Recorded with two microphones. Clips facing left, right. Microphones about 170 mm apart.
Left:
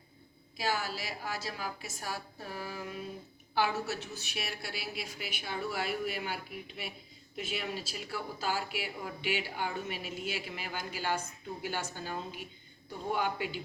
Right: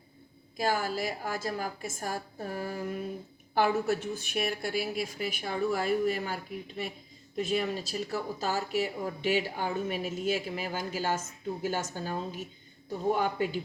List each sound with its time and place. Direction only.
0.5 s speech: 50° right (ahead or behind)